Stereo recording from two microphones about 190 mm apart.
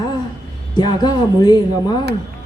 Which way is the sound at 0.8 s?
20° left (ahead or behind).